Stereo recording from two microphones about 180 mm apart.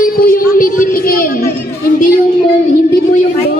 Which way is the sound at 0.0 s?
55° left (ahead or behind).